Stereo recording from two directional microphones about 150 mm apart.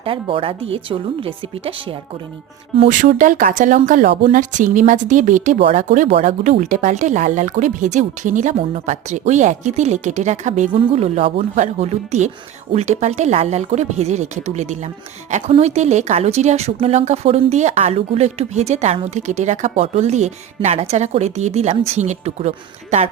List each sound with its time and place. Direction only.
0.0 s speech: 35° right (ahead or behind)
2.9 s a woman's voice: 60° right (ahead or behind)
5.5 s speech: 40° right (ahead or behind)
5.9 s speech: 50° right (ahead or behind)
10.7 s speech: 35° right (ahead or behind)